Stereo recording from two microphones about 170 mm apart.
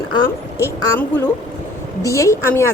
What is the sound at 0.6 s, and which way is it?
A woman's voice, 10° left (ahead or behind).